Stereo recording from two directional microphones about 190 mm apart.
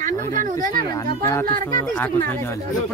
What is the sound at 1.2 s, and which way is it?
Speech, 15° left (ahead or behind).